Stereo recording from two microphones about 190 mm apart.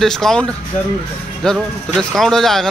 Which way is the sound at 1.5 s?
Centre (ahead or behind).